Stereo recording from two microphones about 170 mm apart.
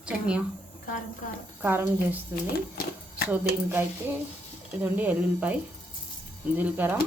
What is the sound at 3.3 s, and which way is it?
A woman's voice, 10° right (ahead or behind).